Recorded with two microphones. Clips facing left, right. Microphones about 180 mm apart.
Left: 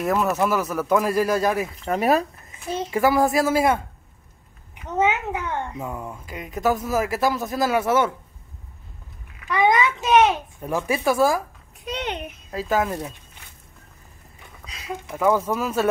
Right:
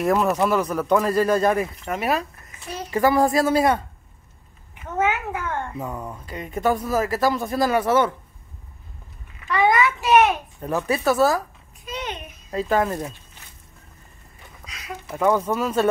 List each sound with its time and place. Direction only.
0.0 s speech: centre (ahead or behind)
1.9 s speech: 35° left (ahead or behind)
2.9 s a child's voice: 10° left (ahead or behind)
4.8 s a child's voice: 20° left (ahead or behind)
9.5 s a child's voice: 20° left (ahead or behind)
11.8 s a sound: 70° left (ahead or behind)
12.4 s speech: 5° left (ahead or behind)
15.0 s a child's voice: 5° left (ahead or behind)